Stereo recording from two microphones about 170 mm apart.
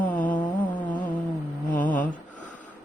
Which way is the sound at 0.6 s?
10° left (ahead or behind).